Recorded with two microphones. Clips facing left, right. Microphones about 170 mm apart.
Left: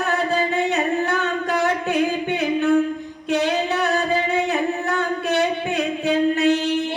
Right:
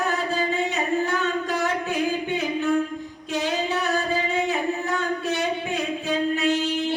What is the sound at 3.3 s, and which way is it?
Singing, 65° left (ahead or behind).